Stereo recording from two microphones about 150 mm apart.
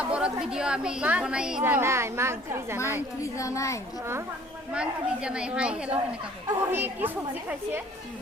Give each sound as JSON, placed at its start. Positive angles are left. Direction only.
{"t": 0.0, "sound": "a woman's voice", "side_deg": -5}
{"t": 3.3, "sound": "a child's voice", "side_deg": 20}
{"t": 4.7, "sound": "a woman's voice", "side_deg": -5}